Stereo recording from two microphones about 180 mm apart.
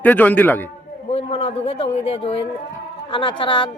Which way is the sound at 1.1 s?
35° left (ahead or behind).